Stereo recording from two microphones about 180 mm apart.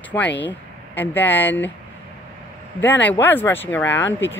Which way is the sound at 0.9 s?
10° left (ahead or behind).